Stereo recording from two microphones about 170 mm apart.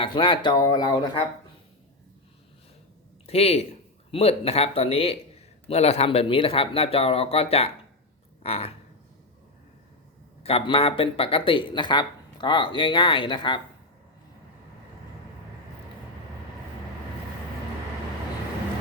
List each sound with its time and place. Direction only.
0.0 s speech: 30° left (ahead or behind)
3.2 s speech: 35° left (ahead or behind)
10.4 s speech: 35° left (ahead or behind)